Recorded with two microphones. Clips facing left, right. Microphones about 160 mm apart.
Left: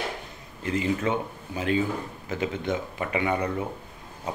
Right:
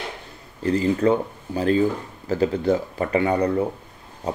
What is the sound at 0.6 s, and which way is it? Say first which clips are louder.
Speech: right 6 dB; 35° right (ahead or behind).